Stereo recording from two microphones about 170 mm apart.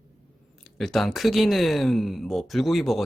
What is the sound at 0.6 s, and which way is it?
Speech, centre (ahead or behind).